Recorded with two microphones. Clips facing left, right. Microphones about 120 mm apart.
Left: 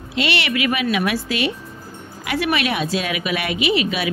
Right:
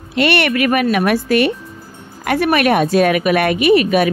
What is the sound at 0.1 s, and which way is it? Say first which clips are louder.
Speech: right 7 dB; 55° right (ahead or behind).